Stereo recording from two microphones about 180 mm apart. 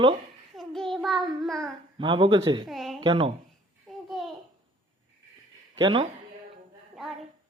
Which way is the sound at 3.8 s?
Centre (ahead or behind).